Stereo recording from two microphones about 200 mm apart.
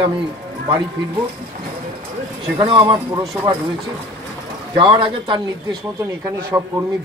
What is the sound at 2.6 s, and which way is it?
Speech, 25° right (ahead or behind).